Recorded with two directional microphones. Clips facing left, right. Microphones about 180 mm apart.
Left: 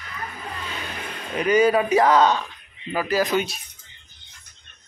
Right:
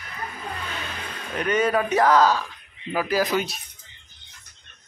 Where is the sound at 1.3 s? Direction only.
5° left (ahead or behind).